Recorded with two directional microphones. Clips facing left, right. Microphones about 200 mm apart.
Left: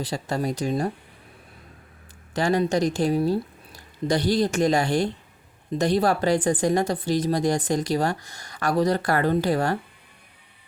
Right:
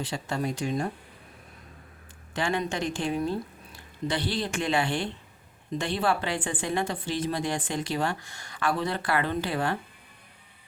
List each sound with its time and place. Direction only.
0.0 s a woman's voice: 40° left (ahead or behind)
2.3 s a woman's voice: 40° left (ahead or behind)